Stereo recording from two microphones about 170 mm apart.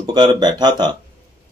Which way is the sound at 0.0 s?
25° right (ahead or behind).